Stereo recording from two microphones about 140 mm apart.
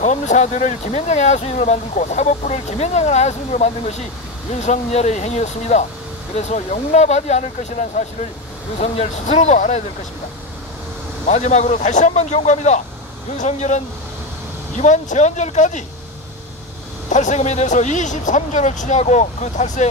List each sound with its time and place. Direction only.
0.0 s speech: 55° left (ahead or behind)
11.2 s speech: 50° left (ahead or behind)
17.1 s speech: 60° left (ahead or behind)